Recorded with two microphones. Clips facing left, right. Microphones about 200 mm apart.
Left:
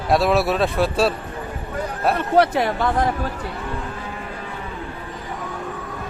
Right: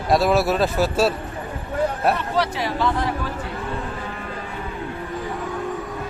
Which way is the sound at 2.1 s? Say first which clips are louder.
Left 6 dB; 55° left (ahead or behind).